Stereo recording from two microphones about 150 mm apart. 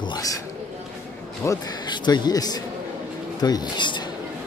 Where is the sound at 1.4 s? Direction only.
25° left (ahead or behind).